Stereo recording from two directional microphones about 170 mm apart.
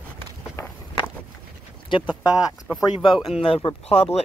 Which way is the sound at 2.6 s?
5° right (ahead or behind).